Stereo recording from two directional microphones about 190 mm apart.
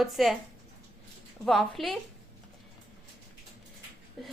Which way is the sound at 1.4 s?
Centre (ahead or behind).